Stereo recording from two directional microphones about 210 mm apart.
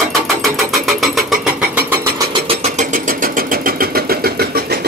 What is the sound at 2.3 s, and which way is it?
Vehicle, 30° right (ahead or behind).